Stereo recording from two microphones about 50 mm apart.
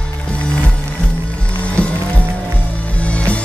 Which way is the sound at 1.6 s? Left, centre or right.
Left.